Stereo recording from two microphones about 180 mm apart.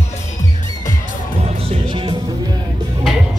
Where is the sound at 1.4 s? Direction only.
35° right (ahead or behind).